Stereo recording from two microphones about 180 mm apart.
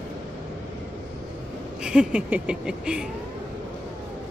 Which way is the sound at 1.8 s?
5° right (ahead or behind).